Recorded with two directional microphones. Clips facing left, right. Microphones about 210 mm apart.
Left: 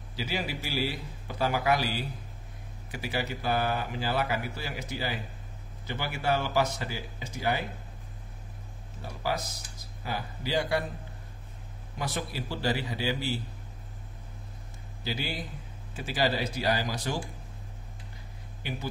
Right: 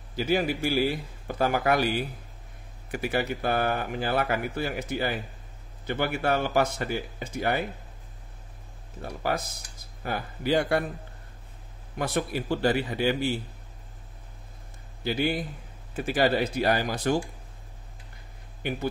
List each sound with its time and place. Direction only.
0.1 s a man's voice: 55° right (ahead or behind)
9.0 s speech: 55° right (ahead or behind)
12.0 s speech: 55° right (ahead or behind)
15.0 s speech: 55° right (ahead or behind)
18.6 s speech: 55° right (ahead or behind)